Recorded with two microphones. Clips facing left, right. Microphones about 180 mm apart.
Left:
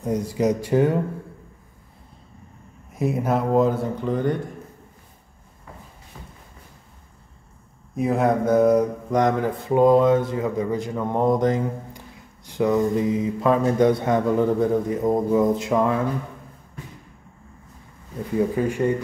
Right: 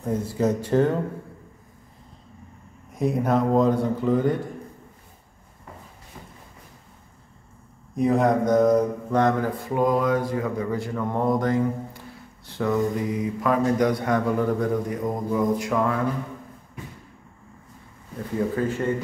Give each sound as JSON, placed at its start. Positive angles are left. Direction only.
{"t": 0.0, "sound": "speech", "side_deg": 15}
{"t": 2.9, "sound": "speech", "side_deg": 5}
{"t": 7.9, "sound": "mantra", "side_deg": 5}
{"t": 18.6, "sound": "speech", "side_deg": 15}